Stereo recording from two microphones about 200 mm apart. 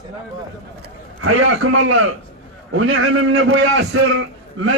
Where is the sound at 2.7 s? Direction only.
75° right (ahead or behind).